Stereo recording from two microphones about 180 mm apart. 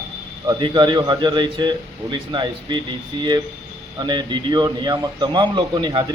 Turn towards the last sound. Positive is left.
turn(degrees=-25)  # may be behind; listen again after turning